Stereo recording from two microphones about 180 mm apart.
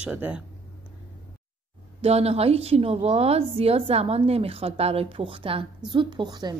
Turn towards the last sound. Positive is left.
turn(degrees=-25)  # may be behind; listen again after turning